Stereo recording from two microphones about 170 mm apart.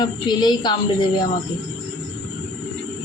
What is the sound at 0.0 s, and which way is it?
Speech, 25° left (ahead or behind).